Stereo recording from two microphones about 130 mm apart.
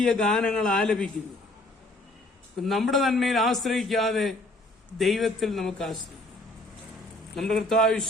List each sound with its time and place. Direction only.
0.0 s a man's voice: 5° left (ahead or behind)
2.6 s a man's voice: centre (ahead or behind)
7.3 s a man's voice: centre (ahead or behind)